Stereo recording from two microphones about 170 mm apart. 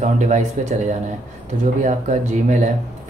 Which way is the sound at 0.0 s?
45° right (ahead or behind).